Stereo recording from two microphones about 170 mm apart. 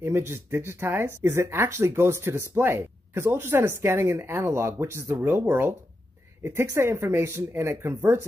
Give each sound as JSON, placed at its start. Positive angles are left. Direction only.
{"t": 0.0, "sound": "speech", "side_deg": -15}